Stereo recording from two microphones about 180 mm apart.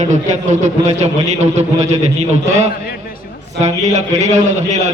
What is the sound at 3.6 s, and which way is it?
A man's voice, 40° right (ahead or behind).